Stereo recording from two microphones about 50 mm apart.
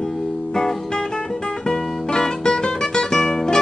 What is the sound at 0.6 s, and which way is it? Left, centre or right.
Music, centre.